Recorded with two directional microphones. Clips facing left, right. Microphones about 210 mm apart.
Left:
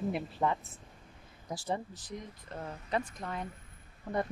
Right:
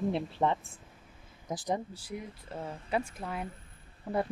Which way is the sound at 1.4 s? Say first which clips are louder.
Right 3 dB; 15° right (ahead or behind).